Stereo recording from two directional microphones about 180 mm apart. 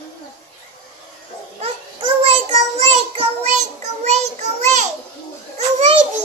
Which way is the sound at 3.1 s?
40° right (ahead or behind).